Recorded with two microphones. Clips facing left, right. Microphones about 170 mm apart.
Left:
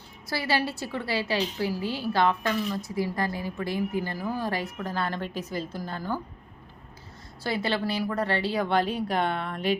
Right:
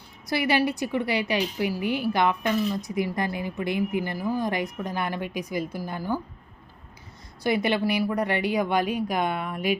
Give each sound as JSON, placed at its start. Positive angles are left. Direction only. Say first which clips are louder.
{"t": 0.3, "sound": "speech", "louder": "right 4 dB", "side_deg": -20}
{"t": 7.4, "sound": "speech", "louder": "right 4 dB", "side_deg": -15}